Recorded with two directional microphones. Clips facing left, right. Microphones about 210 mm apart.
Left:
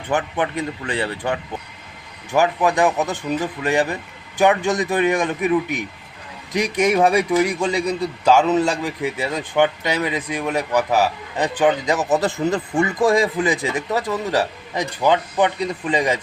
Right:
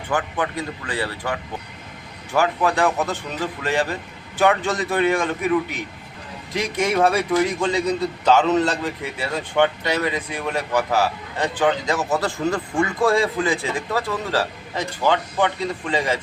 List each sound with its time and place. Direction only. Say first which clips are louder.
0.1 s a man's voice: left 2 dB; 25° left (ahead or behind)
6.5 s a man's voice: left 4 dB; 15° left (ahead or behind)